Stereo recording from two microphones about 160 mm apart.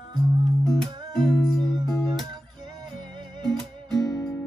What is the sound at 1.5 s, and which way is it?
Music, centre (ahead or behind).